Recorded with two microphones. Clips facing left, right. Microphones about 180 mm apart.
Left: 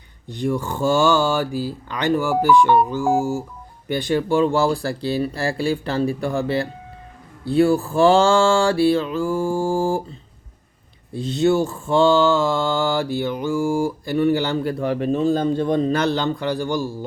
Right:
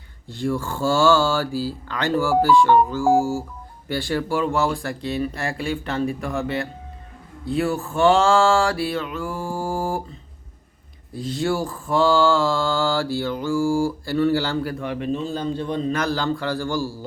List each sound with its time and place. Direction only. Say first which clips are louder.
0.3 s speech: left 2 dB; 15° left (ahead or behind)
7.4 s mantra: left 6 dB; 30° left (ahead or behind)
11.1 s mantra: left 5 dB; 25° left (ahead or behind)
14.8 s speech: left 6 dB; 45° left (ahead or behind)
15.9 s mantra: left 3 dB; 25° left (ahead or behind)